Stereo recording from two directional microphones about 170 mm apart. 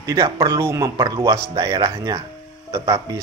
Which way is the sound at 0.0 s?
20° right (ahead or behind).